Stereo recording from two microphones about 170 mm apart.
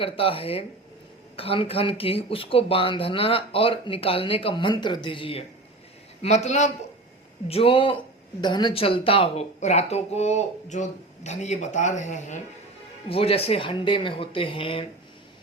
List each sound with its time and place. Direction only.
0.0 s speech: 35° left (ahead or behind)
13.1 s speech: 35° left (ahead or behind)